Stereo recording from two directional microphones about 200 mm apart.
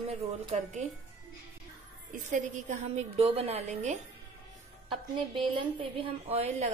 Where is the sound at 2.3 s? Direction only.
35° right (ahead or behind).